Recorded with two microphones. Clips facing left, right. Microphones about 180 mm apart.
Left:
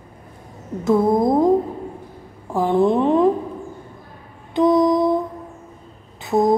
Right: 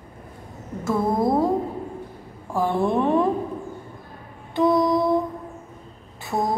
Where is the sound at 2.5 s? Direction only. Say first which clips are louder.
Left 5 dB; 20° left (ahead or behind).